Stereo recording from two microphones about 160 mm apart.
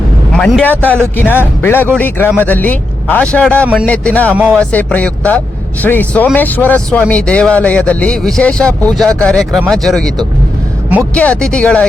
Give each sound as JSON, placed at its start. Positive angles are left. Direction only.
{"t": 0.3, "sound": "speech", "side_deg": 5}
{"t": 11.1, "sound": "speech", "side_deg": 10}